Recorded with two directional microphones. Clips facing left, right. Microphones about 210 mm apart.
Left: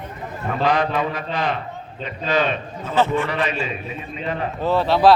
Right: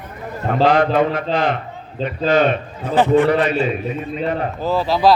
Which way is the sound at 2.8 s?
15° right (ahead or behind).